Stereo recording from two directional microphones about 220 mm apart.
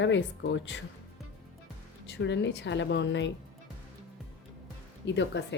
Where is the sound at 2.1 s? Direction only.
55° left (ahead or behind).